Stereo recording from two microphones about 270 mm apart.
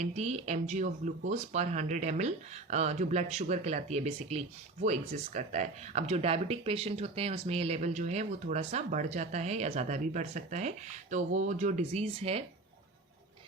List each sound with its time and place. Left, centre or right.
0.0 s speech: right